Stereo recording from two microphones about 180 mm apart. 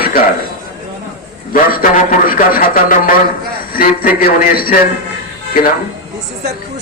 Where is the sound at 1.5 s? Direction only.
55° left (ahead or behind).